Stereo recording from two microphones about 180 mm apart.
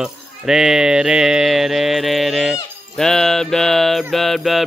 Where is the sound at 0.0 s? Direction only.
5° right (ahead or behind).